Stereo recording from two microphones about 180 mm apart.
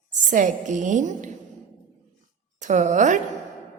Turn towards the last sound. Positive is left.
turn(degrees=-45)  # may be behind; listen again after turning